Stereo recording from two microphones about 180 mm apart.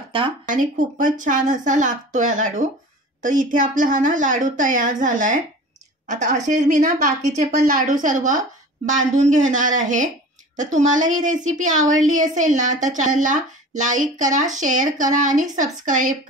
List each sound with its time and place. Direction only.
0.1 s speech: 30° right (ahead or behind)
0.5 s speech: 45° right (ahead or behind)